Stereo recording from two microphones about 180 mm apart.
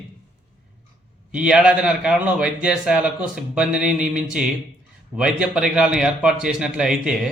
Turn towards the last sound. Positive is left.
turn(degrees=-5)  # may be behind; listen again after turning